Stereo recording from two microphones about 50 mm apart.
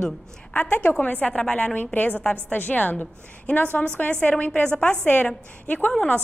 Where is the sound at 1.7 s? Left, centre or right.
Left.